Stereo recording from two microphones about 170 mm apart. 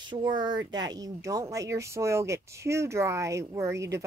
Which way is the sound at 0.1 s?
25° right (ahead or behind).